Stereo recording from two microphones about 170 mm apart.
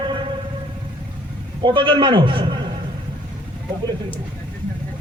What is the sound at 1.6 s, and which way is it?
Speech, 30° right (ahead or behind).